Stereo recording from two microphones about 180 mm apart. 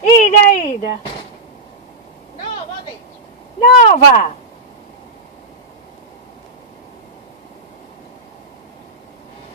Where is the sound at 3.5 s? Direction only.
40° left (ahead or behind).